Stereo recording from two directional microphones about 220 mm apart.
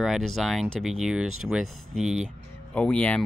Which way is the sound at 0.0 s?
Centre (ahead or behind).